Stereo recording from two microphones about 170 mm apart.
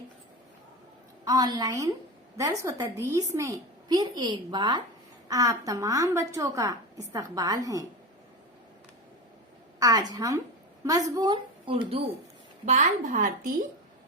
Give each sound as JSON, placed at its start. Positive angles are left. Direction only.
{"t": 1.2, "sound": "a woman's voice", "side_deg": -25}
{"t": 9.8, "sound": "a woman's voice", "side_deg": -20}
{"t": 12.6, "sound": "a woman's voice", "side_deg": -45}